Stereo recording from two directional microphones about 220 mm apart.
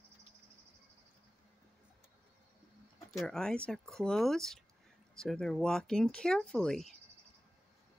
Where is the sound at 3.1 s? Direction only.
Centre (ahead or behind).